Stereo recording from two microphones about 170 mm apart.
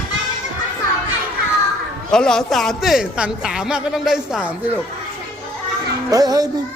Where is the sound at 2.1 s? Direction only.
5° left (ahead or behind).